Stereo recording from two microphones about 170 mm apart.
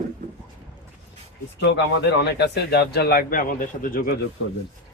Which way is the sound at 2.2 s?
85° left.